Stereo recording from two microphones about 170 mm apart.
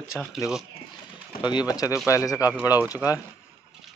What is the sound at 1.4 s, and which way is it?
Speech, 25° left (ahead or behind).